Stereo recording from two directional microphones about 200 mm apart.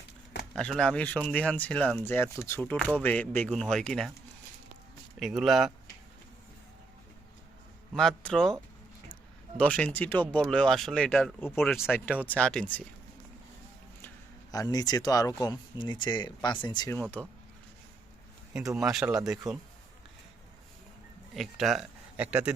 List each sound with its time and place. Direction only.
0.5 s speech: 5° left (ahead or behind)
5.2 s speech: centre (ahead or behind)
7.9 s speech: 5° left (ahead or behind)
9.6 s speech: 5° left (ahead or behind)
11.3 s speech: 10° left (ahead or behind)
11.6 s speech: centre (ahead or behind)
12.1 s speech: 10° right (ahead or behind)
12.4 s speech: 5° left (ahead or behind)
14.5 s speech: 20° left (ahead or behind)
17.0 s speech: 10° left (ahead or behind)
18.8 s speech: centre (ahead or behind)
21.3 s speech: centre (ahead or behind)